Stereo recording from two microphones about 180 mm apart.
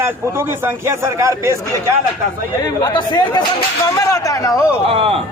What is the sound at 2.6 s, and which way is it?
A man's voice, 25° left (ahead or behind).